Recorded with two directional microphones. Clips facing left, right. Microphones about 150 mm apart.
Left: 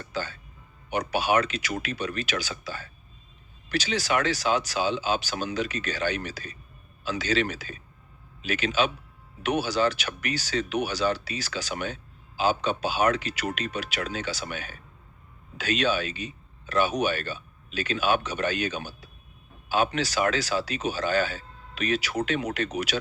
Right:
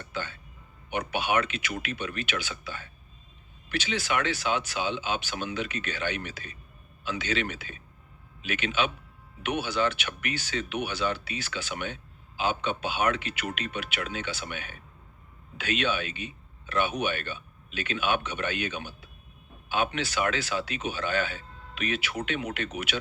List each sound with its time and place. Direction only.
0.0 s music: 35° left (ahead or behind)
0.9 s speech: 35° left (ahead or behind)